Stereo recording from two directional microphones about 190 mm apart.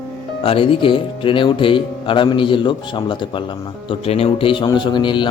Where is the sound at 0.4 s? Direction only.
30° left (ahead or behind).